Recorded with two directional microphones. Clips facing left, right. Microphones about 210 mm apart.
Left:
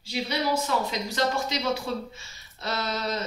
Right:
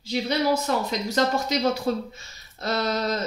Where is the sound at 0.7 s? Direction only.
40° right (ahead or behind).